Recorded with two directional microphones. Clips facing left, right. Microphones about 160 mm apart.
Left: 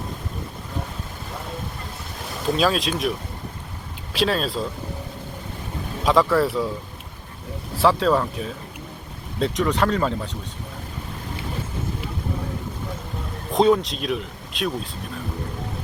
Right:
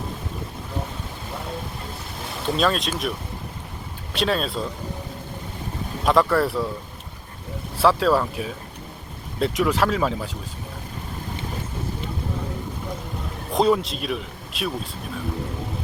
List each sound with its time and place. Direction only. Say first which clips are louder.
2.4 s speech: left 1 dB; centre (ahead or behind)
4.1 s speech: left 1 dB; centre (ahead or behind)
6.1 s speech: left 1 dB; centre (ahead or behind)
7.8 s speech: even; centre (ahead or behind)
13.5 s speech: left 2 dB; centre (ahead or behind)